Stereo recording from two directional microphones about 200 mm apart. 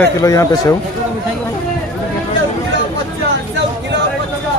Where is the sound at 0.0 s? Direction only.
15° left (ahead or behind).